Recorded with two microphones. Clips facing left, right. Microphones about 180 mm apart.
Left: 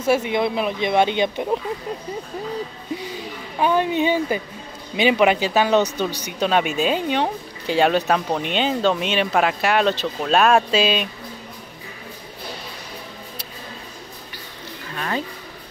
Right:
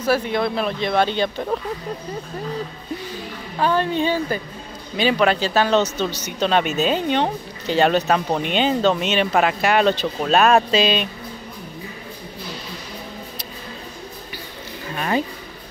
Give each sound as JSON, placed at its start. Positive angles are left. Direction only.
{"t": 0.2, "sound": "speech", "side_deg": 15}
{"t": 3.5, "sound": "speech", "side_deg": 15}
{"t": 15.0, "sound": "a sound", "side_deg": -15}